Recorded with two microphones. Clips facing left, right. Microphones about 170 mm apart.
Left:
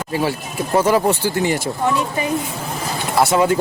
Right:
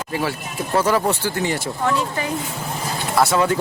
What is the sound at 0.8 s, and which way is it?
Speech, 15° left (ahead or behind).